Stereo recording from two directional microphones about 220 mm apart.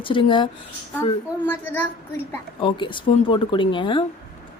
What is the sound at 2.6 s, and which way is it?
A woman's voice, 20° left (ahead or behind).